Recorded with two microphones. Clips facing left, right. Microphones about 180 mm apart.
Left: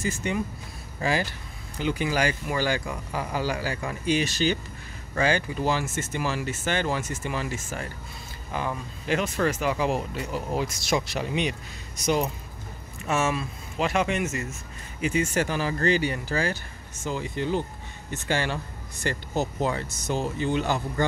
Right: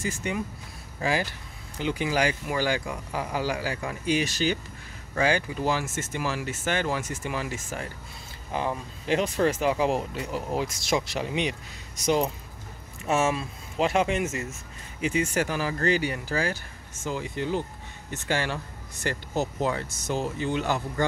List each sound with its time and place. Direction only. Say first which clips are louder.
0.0 s speech: left 2 dB; 10° right (ahead or behind)
8.5 s speech: right 1 dB; 25° right (ahead or behind)
13.0 s speech: right 1 dB; 30° right (ahead or behind)
15.0 s speech: left 1 dB; 15° right (ahead or behind)